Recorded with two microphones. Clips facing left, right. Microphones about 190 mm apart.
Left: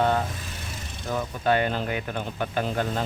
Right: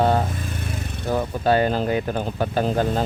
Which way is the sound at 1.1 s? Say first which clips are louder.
Right 4 dB; 35° right (ahead or behind).